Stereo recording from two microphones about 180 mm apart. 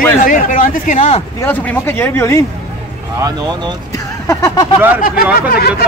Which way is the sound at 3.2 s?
25° right (ahead or behind).